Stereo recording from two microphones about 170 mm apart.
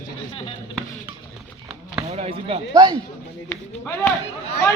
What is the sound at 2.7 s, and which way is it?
Speech, 25° right (ahead or behind).